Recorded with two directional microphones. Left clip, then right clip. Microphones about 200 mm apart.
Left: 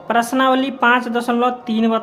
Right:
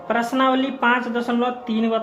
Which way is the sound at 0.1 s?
30° left (ahead or behind).